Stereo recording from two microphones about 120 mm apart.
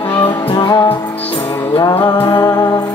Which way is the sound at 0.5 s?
35° left (ahead or behind).